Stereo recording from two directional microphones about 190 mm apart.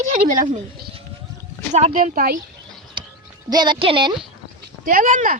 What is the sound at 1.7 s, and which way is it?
Speech, 40° right (ahead or behind).